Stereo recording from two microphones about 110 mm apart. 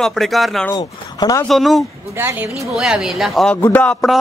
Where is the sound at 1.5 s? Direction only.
Centre (ahead or behind).